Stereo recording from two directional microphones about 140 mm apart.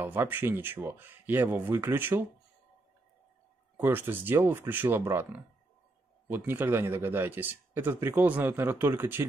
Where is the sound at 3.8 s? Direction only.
15° right (ahead or behind).